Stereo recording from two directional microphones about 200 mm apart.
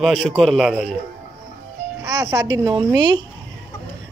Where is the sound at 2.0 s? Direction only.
15° right (ahead or behind).